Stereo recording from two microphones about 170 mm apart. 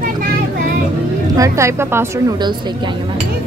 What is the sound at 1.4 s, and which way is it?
Speech, 15° right (ahead or behind).